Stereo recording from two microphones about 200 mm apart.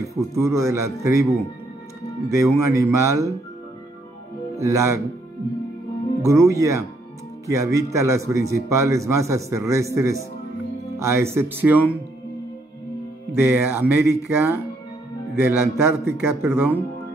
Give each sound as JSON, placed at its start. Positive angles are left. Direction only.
{"t": 0.0, "sound": "a man's voice", "side_deg": -15}
{"t": 4.6, "sound": "a man's voice", "side_deg": -15}
{"t": 6.2, "sound": "a man's voice", "side_deg": -15}
{"t": 13.3, "sound": "a man's voice", "side_deg": -10}